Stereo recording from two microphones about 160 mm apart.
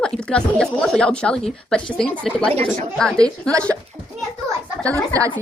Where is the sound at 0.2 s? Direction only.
5° left (ahead or behind).